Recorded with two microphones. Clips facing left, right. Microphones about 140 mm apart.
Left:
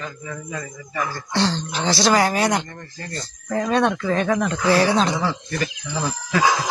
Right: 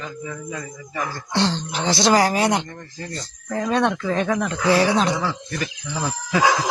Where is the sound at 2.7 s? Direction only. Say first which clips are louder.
Right 1 dB; 10° right (ahead or behind).